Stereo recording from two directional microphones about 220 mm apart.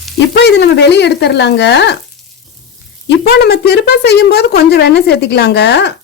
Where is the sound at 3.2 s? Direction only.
45° left (ahead or behind).